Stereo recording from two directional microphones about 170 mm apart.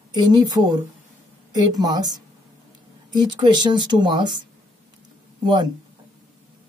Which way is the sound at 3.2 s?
25° right (ahead or behind).